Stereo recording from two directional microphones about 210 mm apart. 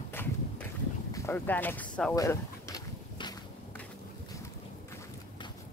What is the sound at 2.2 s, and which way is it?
Boat, 15° left (ahead or behind).